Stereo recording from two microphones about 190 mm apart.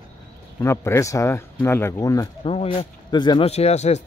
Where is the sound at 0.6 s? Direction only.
15° left (ahead or behind).